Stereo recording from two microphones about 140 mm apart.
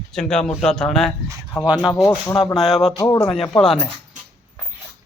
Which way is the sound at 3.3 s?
Centre (ahead or behind).